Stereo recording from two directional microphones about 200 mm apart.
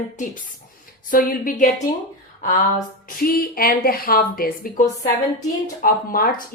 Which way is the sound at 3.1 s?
45° left (ahead or behind).